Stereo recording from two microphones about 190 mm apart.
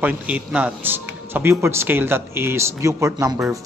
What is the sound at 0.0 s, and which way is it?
Speech, 5° right (ahead or behind).